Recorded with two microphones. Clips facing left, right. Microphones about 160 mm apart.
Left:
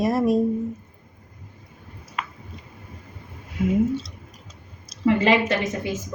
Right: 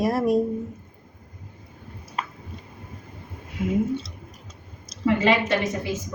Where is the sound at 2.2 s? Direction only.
35° right (ahead or behind).